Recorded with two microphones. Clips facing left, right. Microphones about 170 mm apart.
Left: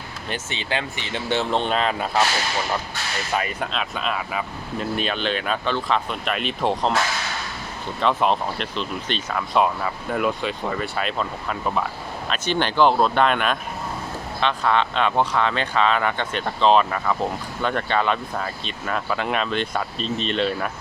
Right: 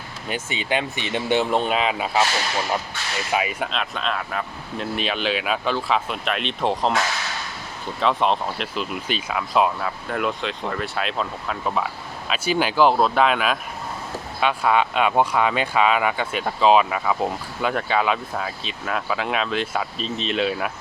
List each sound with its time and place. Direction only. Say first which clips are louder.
0.3 s speech: right 3 dB; 10° right (ahead or behind)
3.3 s speech: right 1 dB; 5° right (ahead or behind)
8.0 s speech: even; centre (ahead or behind)